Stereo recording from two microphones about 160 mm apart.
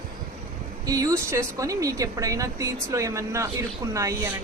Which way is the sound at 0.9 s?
20° right (ahead or behind).